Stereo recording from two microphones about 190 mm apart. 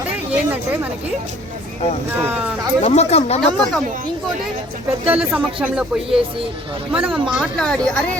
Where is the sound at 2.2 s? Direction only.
10° right (ahead or behind).